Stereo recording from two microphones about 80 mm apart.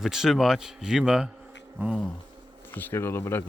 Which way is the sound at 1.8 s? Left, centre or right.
Right.